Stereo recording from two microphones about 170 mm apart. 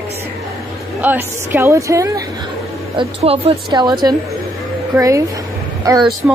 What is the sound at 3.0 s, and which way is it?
A woman's voice, 35° right (ahead or behind).